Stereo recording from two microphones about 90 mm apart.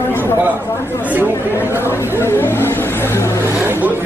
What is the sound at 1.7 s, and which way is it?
Speech, 30° left (ahead or behind).